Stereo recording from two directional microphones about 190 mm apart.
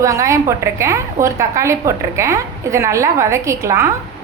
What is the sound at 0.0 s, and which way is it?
A woman's voice, 15° right (ahead or behind).